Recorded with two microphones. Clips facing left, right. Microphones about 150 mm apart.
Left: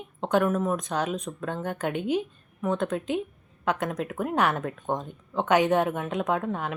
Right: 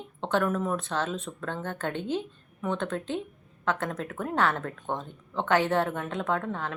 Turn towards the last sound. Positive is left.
turn(degrees=15)  # may be behind; listen again after turning